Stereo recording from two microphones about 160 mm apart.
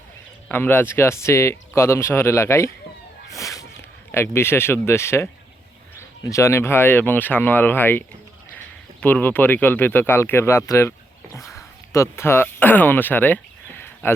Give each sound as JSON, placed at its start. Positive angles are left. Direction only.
{"t": 0.4, "sound": "speech", "side_deg": 10}
{"t": 3.3, "sound": "cat", "side_deg": 20}
{"t": 4.1, "sound": "speech", "side_deg": 15}
{"t": 11.3, "sound": "a sound", "side_deg": 20}